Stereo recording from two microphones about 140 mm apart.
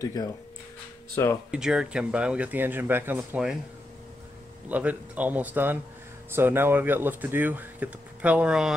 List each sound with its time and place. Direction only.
0.0 s speech: 30° left (ahead or behind)
1.5 s speech: 5° right (ahead or behind)
4.6 s speech: 10° right (ahead or behind)